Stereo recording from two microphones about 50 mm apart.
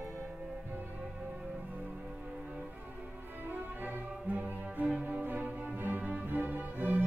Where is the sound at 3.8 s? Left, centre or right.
Right.